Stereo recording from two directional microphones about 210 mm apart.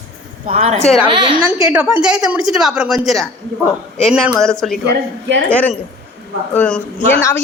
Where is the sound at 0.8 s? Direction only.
30° left (ahead or behind).